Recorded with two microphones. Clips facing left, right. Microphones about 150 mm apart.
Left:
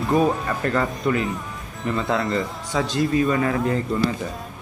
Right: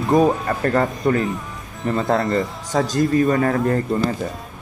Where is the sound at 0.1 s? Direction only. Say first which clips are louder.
Right 4 dB; 40° right (ahead or behind).